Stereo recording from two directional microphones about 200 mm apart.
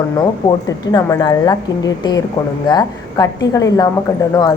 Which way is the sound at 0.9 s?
20° left (ahead or behind).